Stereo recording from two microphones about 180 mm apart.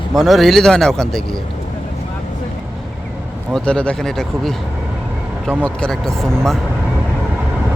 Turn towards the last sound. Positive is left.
turn(degrees=0)  # may be behind; listen again after turning